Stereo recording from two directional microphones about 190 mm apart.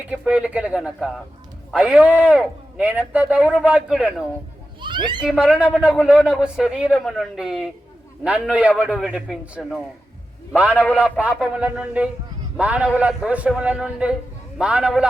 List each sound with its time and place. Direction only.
0.1 s a man's voice: 5° right (ahead or behind)
4.8 s a child's voice: 25° right (ahead or behind)
5.2 s a man's voice: 5° right (ahead or behind)
10.9 s a man's voice: 5° right (ahead or behind)